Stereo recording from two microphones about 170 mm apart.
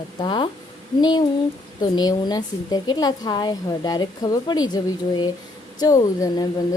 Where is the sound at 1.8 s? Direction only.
25° left (ahead or behind).